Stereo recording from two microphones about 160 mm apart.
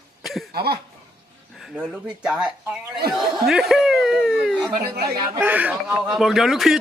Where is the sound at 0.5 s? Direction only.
80° right.